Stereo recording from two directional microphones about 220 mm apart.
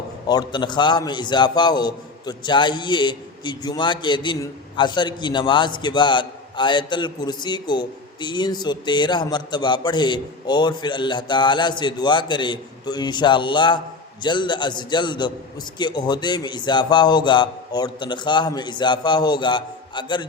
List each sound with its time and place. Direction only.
0.3 s a man's voice: 20° left (ahead or behind)